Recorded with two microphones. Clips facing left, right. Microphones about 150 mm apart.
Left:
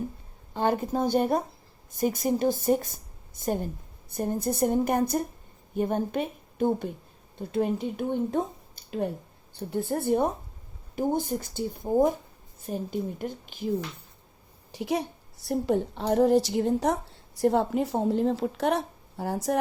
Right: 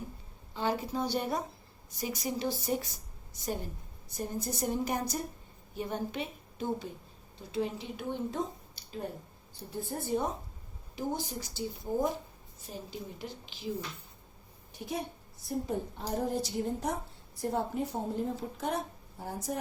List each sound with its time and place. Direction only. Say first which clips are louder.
0.5 s a woman's voice: left 6 dB; 55° left (ahead or behind)
14.7 s a woman's voice: left 8 dB; 90° left